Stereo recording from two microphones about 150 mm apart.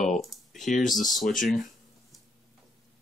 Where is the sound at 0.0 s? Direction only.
Centre (ahead or behind).